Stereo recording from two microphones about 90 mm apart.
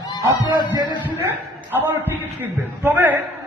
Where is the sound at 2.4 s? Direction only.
20° right (ahead or behind).